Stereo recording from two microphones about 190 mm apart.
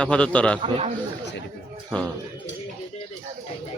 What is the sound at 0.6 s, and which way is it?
Speech, 30° right (ahead or behind).